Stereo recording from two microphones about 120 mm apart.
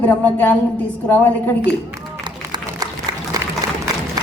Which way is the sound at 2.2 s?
35° right (ahead or behind).